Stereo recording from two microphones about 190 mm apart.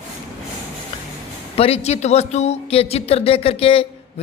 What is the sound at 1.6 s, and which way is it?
Speech, 35° left (ahead or behind).